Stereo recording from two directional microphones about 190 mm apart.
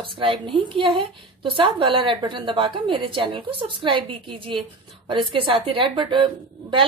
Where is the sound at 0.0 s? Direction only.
25° right (ahead or behind).